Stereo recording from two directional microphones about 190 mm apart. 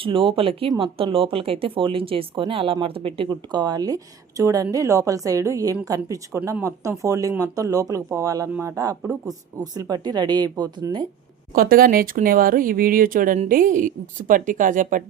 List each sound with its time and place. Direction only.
0.0 s speech: 25° right (ahead or behind)
11.5 s speech: 50° right (ahead or behind)